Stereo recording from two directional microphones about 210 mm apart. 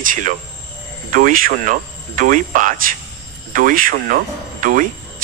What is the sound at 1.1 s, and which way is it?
Speech, 40° right (ahead or behind).